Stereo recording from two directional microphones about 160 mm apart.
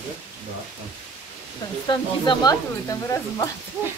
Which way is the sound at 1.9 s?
25° left (ahead or behind).